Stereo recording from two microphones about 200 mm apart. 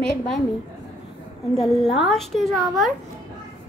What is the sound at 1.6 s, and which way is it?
A woman's voice, centre (ahead or behind).